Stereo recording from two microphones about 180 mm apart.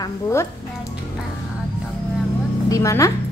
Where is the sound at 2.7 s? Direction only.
15° left (ahead or behind).